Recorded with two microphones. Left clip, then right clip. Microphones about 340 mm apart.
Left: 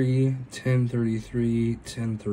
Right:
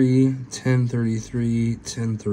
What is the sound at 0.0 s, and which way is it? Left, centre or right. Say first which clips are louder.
Speech: right 7 dB; centre.